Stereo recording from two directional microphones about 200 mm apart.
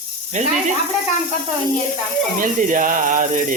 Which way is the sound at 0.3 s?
35° right (ahead or behind).